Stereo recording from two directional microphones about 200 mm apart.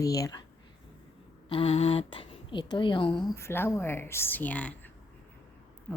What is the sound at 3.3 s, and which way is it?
Speech, 10° left (ahead or behind).